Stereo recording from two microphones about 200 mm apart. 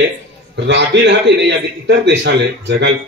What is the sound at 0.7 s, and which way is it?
A man's voice, 60° right (ahead or behind).